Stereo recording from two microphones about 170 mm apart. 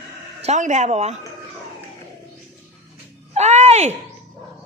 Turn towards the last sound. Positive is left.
turn(degrees=-40)  # may be behind; listen again after turning